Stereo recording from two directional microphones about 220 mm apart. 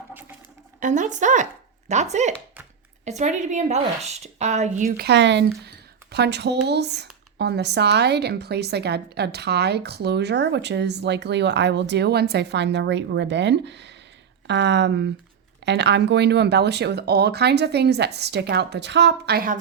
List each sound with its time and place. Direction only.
0.8 s a woman's voice: 35° right (ahead or behind)
4.9 s speech: 50° right (ahead or behind)